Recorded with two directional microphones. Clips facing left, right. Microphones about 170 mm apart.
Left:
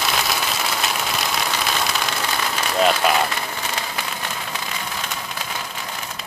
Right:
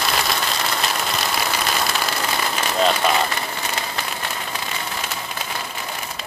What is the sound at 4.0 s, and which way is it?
Rain on surface, 5° right (ahead or behind).